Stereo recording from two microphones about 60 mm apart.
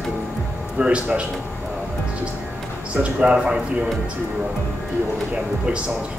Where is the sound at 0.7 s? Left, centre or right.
Centre.